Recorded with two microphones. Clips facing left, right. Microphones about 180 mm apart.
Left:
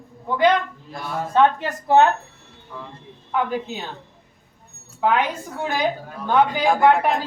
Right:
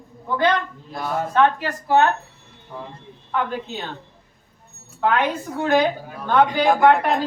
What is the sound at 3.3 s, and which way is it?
Speech, 10° left (ahead or behind).